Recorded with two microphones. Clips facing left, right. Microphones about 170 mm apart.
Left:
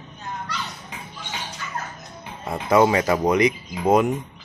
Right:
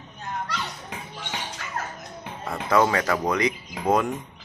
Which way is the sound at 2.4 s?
15° left (ahead or behind).